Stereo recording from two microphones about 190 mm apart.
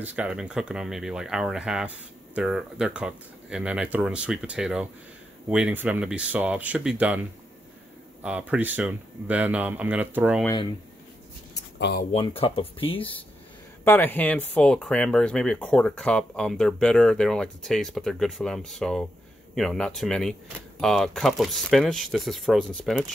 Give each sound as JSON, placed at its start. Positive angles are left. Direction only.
{"t": 0.0, "sound": "speech", "side_deg": -5}
{"t": 8.2, "sound": "speech", "side_deg": -5}
{"t": 12.1, "sound": "speech", "side_deg": 30}
{"t": 13.8, "sound": "speech", "side_deg": 10}